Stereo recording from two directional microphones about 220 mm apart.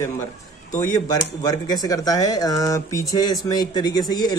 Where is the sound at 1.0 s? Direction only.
15° left (ahead or behind).